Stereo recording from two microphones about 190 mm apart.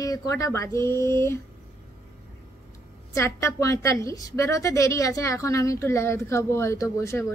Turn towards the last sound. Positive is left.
turn(degrees=15)  # may be behind; listen again after turning